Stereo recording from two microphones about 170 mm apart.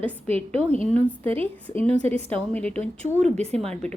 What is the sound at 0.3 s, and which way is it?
Speech, 35° right (ahead or behind).